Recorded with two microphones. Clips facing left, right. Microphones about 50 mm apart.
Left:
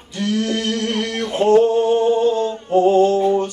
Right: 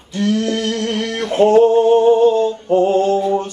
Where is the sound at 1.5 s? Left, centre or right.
Right.